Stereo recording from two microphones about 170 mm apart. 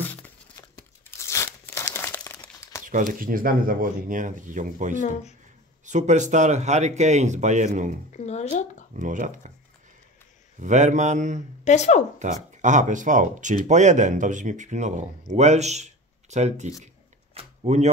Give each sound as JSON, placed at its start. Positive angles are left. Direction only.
{"t": 0.0, "sound": "tearing", "side_deg": 10}
{"t": 2.0, "sound": "crumpling", "side_deg": 15}
{"t": 2.9, "sound": "speech", "side_deg": -50}
{"t": 8.2, "sound": "speech", "side_deg": 40}
{"t": 8.9, "sound": "speech", "side_deg": -50}
{"t": 10.6, "sound": "speech", "side_deg": -45}
{"t": 11.6, "sound": "speech", "side_deg": 40}
{"t": 12.2, "sound": "speech", "side_deg": -45}
{"t": 16.8, "sound": "a sound", "side_deg": -40}